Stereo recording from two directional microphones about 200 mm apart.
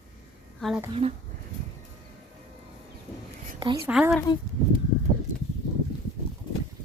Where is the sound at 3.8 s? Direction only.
5° right (ahead or behind).